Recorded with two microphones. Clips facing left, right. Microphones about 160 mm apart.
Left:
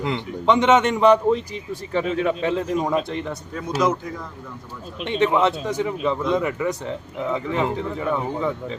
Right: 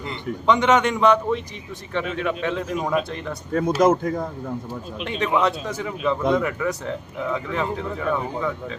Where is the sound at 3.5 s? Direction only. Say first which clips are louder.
Right 5 dB; 55° right (ahead or behind).